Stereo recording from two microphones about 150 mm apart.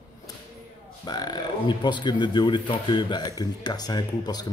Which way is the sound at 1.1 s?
25° left (ahead or behind).